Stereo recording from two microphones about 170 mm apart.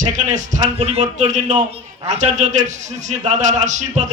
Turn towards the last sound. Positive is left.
turn(degrees=-45)  # may be behind; listen again after turning